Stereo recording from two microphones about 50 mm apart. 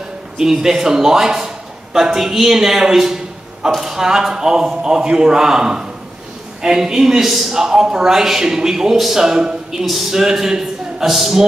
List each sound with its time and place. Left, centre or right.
0.4 s a man's voice: centre